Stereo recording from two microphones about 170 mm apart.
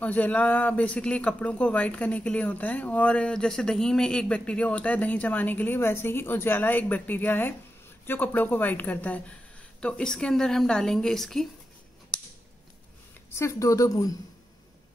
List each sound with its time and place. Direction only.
0.0 s a woman's voice: 10° left (ahead or behind)
13.3 s a woman's voice: 15° left (ahead or behind)